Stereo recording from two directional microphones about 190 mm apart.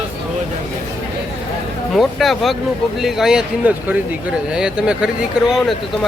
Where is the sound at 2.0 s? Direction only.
Centre (ahead or behind).